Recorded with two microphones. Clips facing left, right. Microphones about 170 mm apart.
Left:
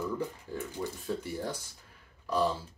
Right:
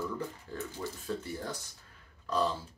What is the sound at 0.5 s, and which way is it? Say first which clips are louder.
Speech: even; 15° left (ahead or behind).